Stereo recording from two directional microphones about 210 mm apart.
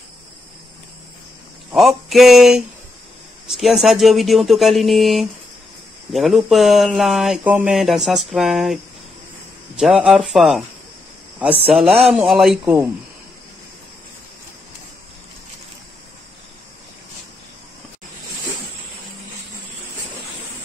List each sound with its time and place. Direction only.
1.7 s speech: centre (ahead or behind)
9.8 s speech: centre (ahead or behind)
11.7 s speech: centre (ahead or behind)